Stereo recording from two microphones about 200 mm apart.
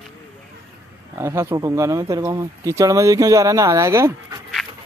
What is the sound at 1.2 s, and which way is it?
Speech, 10° right (ahead or behind).